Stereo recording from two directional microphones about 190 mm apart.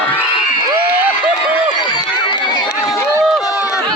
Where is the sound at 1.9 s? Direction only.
25° left (ahead or behind).